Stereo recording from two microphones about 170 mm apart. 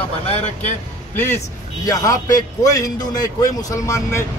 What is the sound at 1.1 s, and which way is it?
A man's voice, 15° left (ahead or behind).